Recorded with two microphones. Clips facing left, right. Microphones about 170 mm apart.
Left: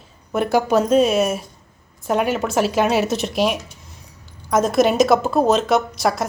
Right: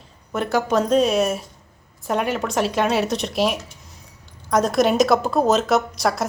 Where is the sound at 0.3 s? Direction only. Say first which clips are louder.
Left 3 dB; 10° left (ahead or behind).